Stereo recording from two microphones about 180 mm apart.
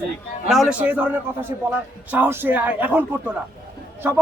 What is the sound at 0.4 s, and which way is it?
A man's voice, centre (ahead or behind).